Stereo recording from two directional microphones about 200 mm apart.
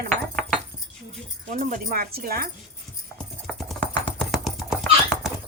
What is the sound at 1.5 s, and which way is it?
Chopping, 40° right (ahead or behind).